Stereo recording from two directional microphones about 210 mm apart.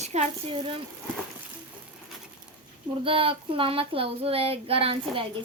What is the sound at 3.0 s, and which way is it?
Speech, 25° right (ahead or behind).